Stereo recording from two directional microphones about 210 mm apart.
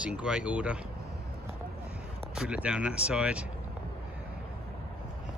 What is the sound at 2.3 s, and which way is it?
Speech, 5° right (ahead or behind).